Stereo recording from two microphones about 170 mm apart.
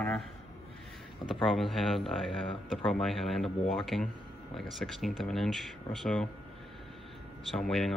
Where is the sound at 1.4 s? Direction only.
Centre (ahead or behind).